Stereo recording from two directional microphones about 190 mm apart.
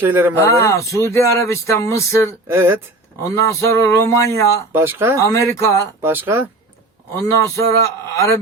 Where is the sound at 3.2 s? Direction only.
15° left (ahead or behind).